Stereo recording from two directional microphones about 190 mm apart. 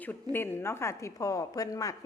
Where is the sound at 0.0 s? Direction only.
10° left (ahead or behind).